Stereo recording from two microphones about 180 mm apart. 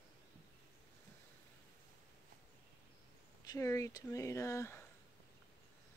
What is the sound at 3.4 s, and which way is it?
Speech, 15° left (ahead or behind).